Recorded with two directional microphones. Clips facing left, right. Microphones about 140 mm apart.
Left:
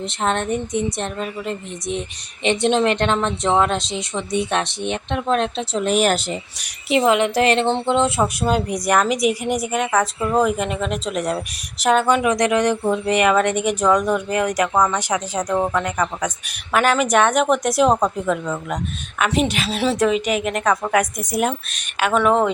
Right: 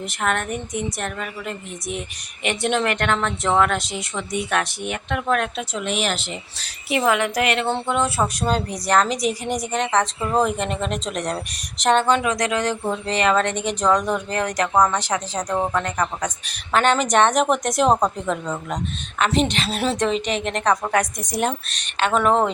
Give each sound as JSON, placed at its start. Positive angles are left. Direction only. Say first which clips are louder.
{"t": 0.0, "sound": "a woman's voice", "louder": "left 2 dB", "side_deg": 25}
{"t": 6.6, "sound": "a woman's voice", "louder": "left 4 dB", "side_deg": 20}
{"t": 8.4, "sound": "a woman's voice", "louder": "left 3 dB", "side_deg": 10}